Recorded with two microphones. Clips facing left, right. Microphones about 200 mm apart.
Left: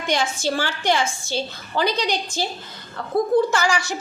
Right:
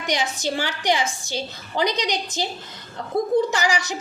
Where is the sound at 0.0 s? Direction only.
15° right (ahead or behind).